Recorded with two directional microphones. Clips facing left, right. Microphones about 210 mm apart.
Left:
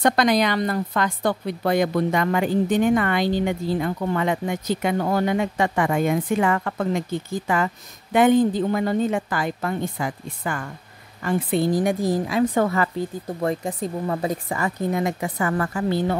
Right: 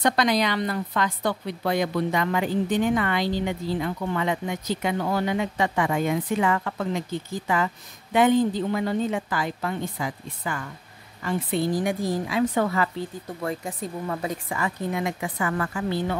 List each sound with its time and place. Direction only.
0.0 s a woman's voice: 50° left (ahead or behind)
13.4 s speech: 35° left (ahead or behind)